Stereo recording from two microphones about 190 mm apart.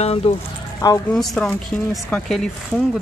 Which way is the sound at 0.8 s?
20° left (ahead or behind).